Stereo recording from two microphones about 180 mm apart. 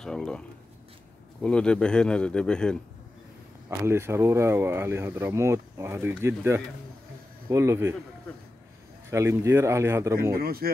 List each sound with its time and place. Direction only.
0.0 s speech: 5° left (ahead or behind)
3.8 s speech: 15° right (ahead or behind)
9.1 s speech: 15° right (ahead or behind)
10.3 s speech: 55° right (ahead or behind)